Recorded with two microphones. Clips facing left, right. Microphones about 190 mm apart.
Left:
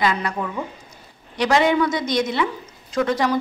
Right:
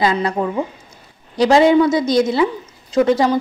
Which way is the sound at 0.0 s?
30° right (ahead or behind).